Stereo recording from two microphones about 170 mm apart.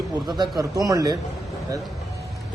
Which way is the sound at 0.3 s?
25° right (ahead or behind).